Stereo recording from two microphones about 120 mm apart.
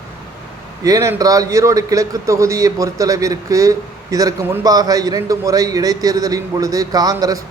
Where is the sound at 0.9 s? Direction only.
30° right (ahead or behind).